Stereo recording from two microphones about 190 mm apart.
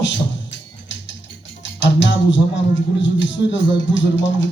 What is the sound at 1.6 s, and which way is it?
Speech, 70° left (ahead or behind).